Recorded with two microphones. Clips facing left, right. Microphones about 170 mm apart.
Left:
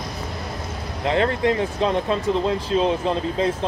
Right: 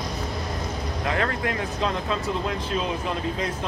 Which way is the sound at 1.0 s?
25° left (ahead or behind).